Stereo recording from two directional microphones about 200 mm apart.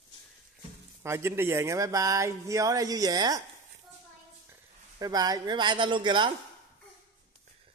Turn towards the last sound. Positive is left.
turn(degrees=-25)  # may be behind; listen again after turning